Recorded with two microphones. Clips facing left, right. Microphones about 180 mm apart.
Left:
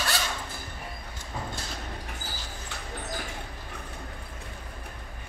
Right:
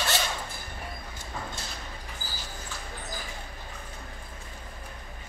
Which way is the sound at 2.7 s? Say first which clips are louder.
Left 5 dB; 65° left (ahead or behind).